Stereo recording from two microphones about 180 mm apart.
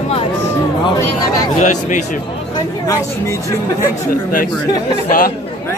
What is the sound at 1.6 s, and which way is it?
Speech, 45° left (ahead or behind).